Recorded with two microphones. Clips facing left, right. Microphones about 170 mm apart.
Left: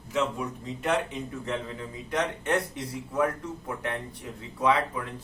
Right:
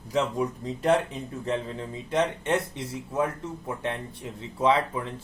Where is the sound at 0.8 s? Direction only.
35° right (ahead or behind).